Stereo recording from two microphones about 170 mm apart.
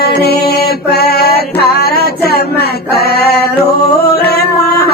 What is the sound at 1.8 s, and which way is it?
Music, 70° left (ahead or behind).